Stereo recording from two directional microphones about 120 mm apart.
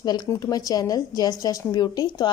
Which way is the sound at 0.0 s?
30° left (ahead or behind).